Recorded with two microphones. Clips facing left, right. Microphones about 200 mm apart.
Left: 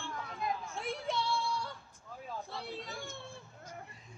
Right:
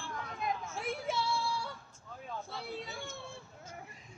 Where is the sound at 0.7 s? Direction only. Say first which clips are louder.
Right 1 dB; 5° right (ahead or behind).